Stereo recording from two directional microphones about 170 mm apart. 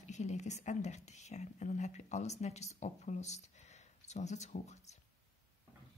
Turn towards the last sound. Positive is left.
turn(degrees=40)  # may be behind; listen again after turning